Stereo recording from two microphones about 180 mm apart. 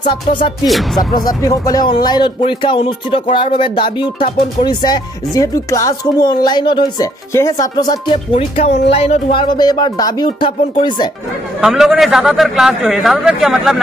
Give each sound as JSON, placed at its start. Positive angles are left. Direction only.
{"t": 1.2, "sound": "speech", "side_deg": 20}
{"t": 8.5, "sound": "speech", "side_deg": 35}
{"t": 11.6, "sound": "a man's voice", "side_deg": 0}